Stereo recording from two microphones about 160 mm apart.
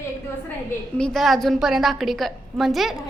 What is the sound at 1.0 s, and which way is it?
A woman's voice, 5° left (ahead or behind).